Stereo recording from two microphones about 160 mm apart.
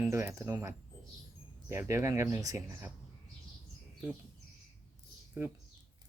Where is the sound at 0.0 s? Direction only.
15° right (ahead or behind).